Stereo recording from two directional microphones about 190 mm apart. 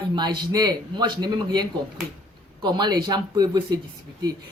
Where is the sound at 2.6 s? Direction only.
20° right (ahead or behind).